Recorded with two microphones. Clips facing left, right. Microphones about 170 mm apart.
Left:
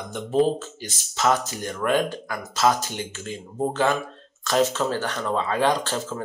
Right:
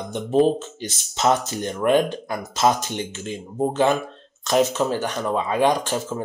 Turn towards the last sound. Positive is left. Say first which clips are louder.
# right 2 dB
turn(degrees=-15)  # may be behind; listen again after turning